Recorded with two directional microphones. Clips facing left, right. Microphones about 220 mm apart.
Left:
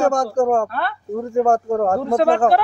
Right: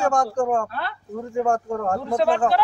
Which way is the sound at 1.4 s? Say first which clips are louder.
Left 6 dB; 40° left (ahead or behind).